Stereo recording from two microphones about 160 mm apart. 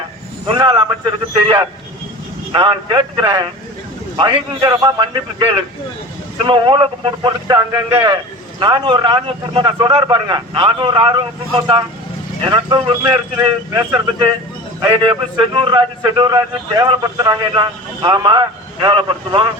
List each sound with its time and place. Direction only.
0.4 s a man's voice: 30° right (ahead or behind)